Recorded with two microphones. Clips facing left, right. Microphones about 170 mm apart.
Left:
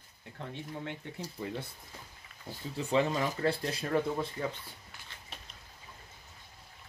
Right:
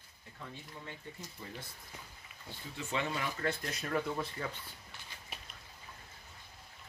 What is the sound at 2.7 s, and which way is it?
Speech, 35° left (ahead or behind).